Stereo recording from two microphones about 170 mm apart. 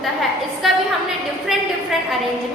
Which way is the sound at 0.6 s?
Centre (ahead or behind).